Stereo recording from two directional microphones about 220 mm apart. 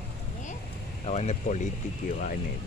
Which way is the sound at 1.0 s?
30° left (ahead or behind).